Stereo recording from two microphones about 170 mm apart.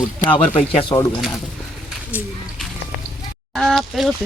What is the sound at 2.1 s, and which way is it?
Speech, 10° right (ahead or behind).